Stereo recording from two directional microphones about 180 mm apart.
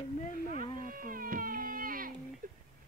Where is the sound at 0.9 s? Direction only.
50° right (ahead or behind).